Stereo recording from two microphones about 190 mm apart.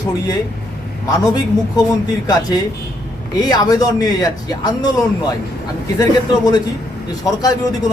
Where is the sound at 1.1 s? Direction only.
20° left (ahead or behind).